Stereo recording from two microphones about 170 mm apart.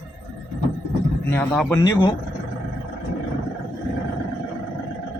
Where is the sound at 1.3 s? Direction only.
5° left (ahead or behind).